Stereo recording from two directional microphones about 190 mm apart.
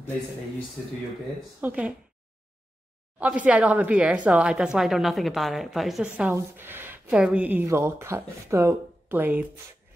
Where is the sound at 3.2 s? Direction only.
5° right (ahead or behind).